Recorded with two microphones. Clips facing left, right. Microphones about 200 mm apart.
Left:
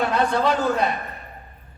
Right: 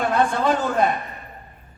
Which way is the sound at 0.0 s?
50° right (ahead or behind).